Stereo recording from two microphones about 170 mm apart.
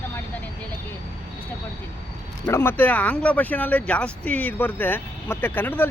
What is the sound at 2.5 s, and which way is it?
Speech, 10° left (ahead or behind).